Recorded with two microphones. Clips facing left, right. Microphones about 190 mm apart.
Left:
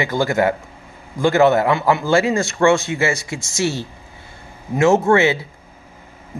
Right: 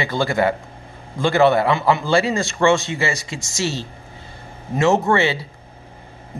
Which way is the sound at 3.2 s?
20° right (ahead or behind).